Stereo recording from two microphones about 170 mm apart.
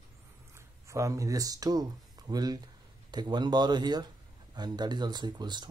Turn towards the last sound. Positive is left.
turn(degrees=-25)  # may be behind; listen again after turning